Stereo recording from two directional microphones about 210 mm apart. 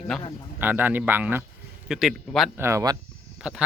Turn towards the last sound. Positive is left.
turn(degrees=-5)  # may be behind; listen again after turning